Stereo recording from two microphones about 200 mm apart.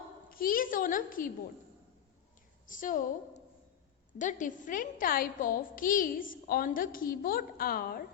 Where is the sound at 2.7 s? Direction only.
40° left (ahead or behind).